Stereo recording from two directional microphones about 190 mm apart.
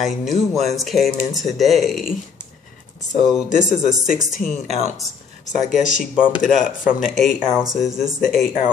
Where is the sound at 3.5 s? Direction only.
45° left (ahead or behind).